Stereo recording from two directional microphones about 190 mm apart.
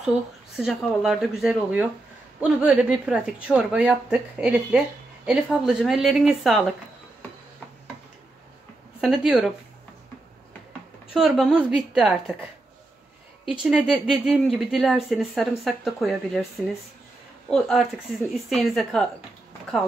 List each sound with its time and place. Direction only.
0.6 s a woman's voice: centre (ahead or behind)
9.0 s a woman's voice: 5° right (ahead or behind)
11.1 s a woman's voice: 5° right (ahead or behind)
13.5 s a woman's voice: 5° right (ahead or behind)
17.5 s a woman's voice: centre (ahead or behind)